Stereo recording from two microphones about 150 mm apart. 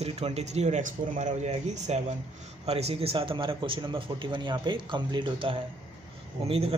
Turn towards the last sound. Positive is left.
turn(degrees=-40)  # may be behind; listen again after turning